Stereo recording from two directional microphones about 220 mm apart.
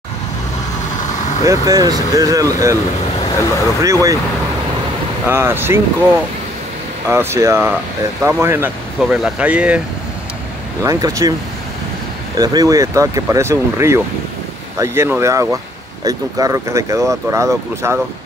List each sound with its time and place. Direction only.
1.7 s speech: 15° right (ahead or behind)
3.8 s speech: 15° right (ahead or behind)
5.3 s speech: 10° right (ahead or behind)
10.8 s speech: 15° right (ahead or behind)
12.4 s speech: 15° right (ahead or behind)